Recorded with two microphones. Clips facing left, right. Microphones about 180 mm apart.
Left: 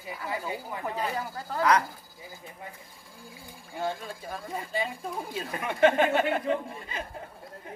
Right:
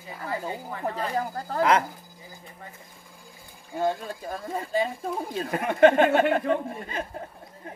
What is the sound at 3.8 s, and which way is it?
Speech, 40° right (ahead or behind).